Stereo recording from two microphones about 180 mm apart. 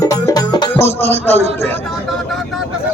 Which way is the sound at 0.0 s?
20° left (ahead or behind).